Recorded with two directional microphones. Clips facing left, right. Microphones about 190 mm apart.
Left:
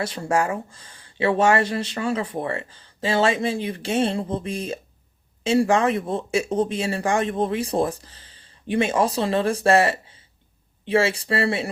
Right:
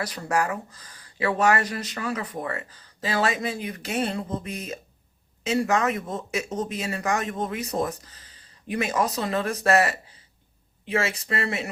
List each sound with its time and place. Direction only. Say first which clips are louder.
0.0 s speech: left 3 dB; 25° left (ahead or behind)